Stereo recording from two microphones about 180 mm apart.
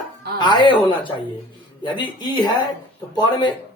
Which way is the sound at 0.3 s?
25° left (ahead or behind).